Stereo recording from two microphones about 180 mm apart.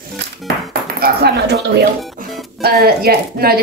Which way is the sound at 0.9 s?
60° right (ahead or behind).